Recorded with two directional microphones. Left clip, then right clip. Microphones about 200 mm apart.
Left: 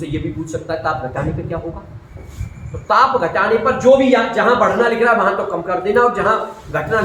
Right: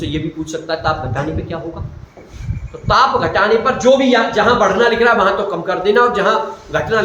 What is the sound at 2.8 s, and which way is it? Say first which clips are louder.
Speech: right 1 dB; 20° right (ahead or behind).